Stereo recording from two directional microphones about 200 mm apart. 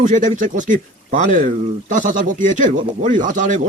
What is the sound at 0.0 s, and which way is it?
Speech, 40° right (ahead or behind).